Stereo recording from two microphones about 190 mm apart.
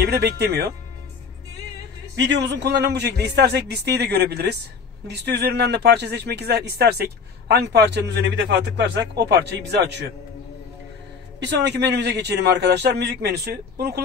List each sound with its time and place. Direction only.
0.0 s a man's voice: 60° right (ahead or behind)
2.1 s a man's voice: 65° right (ahead or behind)
11.3 s a man's voice: 65° right (ahead or behind)